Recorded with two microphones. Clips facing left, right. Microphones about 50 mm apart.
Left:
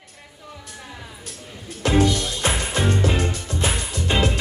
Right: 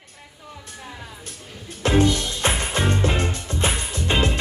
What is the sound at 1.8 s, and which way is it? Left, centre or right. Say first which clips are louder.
Music: even; right.